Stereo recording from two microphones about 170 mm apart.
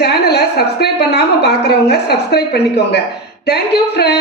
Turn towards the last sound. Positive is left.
turn(degrees=75)  # may be behind; listen again after turning